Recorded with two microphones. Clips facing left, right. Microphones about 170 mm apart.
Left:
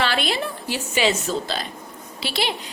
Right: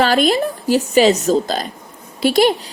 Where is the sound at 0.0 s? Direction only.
45° right (ahead or behind).